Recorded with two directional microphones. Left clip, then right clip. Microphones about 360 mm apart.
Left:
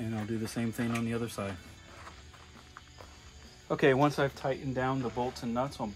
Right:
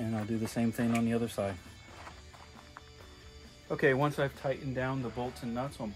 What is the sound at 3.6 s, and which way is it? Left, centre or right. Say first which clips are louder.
Speech: left 3 dB; left.